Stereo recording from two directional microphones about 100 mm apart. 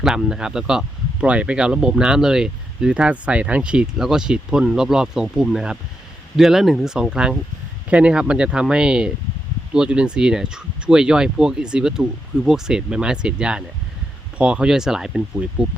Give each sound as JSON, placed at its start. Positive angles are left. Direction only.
{"t": 0.0, "sound": "speech", "side_deg": -5}